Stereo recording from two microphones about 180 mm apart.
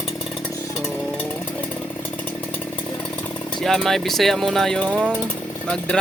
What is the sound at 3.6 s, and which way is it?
Speech, centre (ahead or behind).